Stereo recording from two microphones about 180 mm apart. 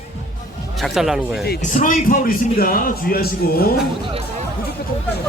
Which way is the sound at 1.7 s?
45° left (ahead or behind).